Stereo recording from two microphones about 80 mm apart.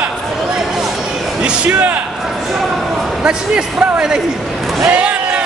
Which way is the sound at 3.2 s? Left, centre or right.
Centre.